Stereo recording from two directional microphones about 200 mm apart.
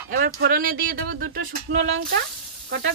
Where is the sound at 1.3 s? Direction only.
70° right (ahead or behind).